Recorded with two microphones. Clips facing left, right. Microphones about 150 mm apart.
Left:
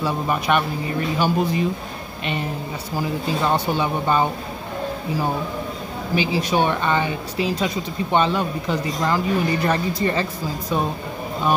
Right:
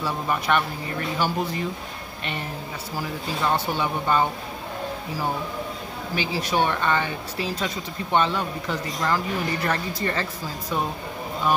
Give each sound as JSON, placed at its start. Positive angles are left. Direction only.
{"t": 0.0, "sound": "speech", "side_deg": 15}
{"t": 3.5, "sound": "speech", "side_deg": 15}
{"t": 6.1, "sound": "speech", "side_deg": 15}